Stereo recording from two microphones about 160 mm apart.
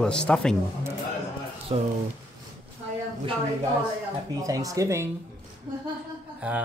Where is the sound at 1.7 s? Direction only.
30° right (ahead or behind).